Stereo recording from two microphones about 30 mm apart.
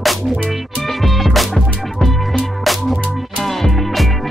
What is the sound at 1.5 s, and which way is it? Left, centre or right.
Music, centre.